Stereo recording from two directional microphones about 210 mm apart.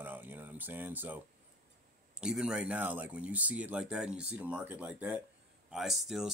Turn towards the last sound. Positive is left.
turn(degrees=0)  # may be behind; listen again after turning